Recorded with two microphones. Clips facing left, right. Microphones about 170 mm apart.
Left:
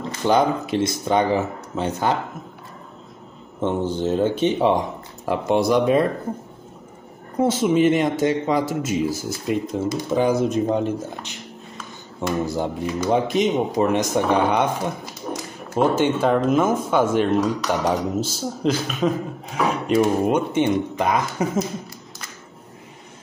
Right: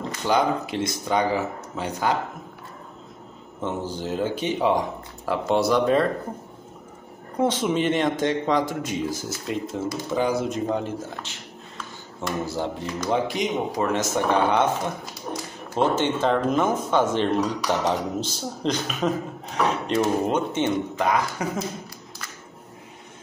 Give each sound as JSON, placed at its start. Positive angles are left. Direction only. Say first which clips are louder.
{"t": 0.3, "sound": "speech", "louder": "left 4 dB", "side_deg": 20}
{"t": 3.6, "sound": "speech", "louder": "left 7 dB", "side_deg": 25}
{"t": 7.4, "sound": "speech", "louder": "left 5 dB", "side_deg": 5}
{"t": 12.4, "sound": "speech", "louder": "left 4 dB", "side_deg": 15}
{"t": 15.7, "sound": "speech", "louder": "left 3 dB", "side_deg": 10}